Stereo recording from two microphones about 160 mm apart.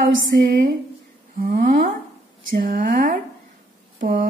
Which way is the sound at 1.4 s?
70° right (ahead or behind).